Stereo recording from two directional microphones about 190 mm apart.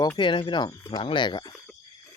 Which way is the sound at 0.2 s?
25° left (ahead or behind).